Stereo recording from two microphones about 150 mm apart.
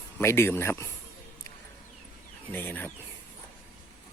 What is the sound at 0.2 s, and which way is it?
Speech, 15° left (ahead or behind).